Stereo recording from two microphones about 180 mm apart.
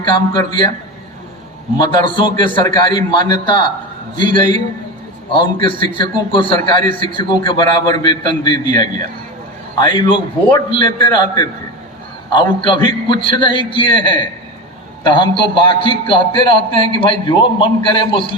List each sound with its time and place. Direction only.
0.0 s a man's voice: 25° left (ahead or behind)
1.8 s a man's voice: 25° left (ahead or behind)